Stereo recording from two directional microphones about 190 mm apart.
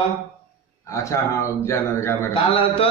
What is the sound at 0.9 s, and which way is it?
Speech, 15° left (ahead or behind).